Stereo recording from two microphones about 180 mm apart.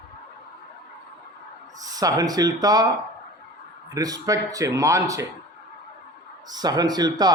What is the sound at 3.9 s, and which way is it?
Speech, 20° right (ahead or behind).